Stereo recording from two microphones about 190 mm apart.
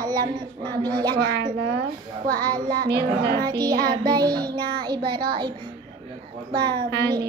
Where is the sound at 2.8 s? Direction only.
60° right (ahead or behind).